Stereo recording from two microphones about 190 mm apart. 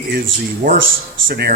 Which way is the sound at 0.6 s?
45° right (ahead or behind).